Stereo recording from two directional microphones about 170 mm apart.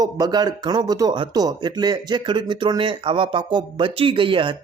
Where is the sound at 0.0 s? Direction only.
25° right (ahead or behind).